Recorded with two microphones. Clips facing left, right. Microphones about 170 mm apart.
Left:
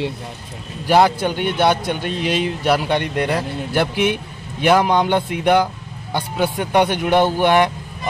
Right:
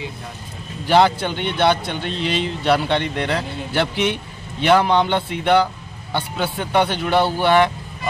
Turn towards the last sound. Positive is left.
turn(degrees=15)  # may be behind; listen again after turning